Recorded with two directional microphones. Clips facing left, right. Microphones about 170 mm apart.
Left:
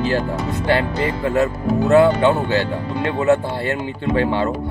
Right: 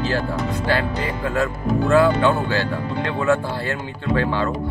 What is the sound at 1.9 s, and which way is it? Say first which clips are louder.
Speech: left 3 dB; 20° left (ahead or behind).